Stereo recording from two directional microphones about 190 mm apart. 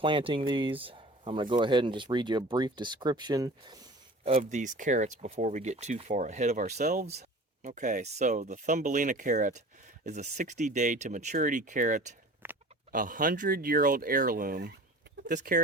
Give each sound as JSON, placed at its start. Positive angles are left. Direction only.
{"t": 0.0, "sound": "speech", "side_deg": -25}
{"t": 12.4, "sound": "a sound", "side_deg": -10}
{"t": 12.9, "sound": "speech", "side_deg": -45}